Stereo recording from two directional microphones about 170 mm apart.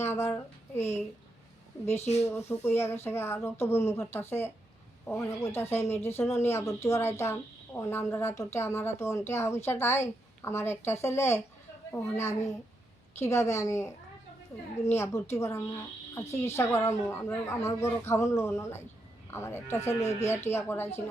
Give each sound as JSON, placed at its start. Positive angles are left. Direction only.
{"t": 0.0, "sound": "a woman's voice", "side_deg": 15}
{"t": 1.9, "sound": "speech", "side_deg": 40}
{"t": 2.5, "sound": "a woman's voice", "side_deg": 15}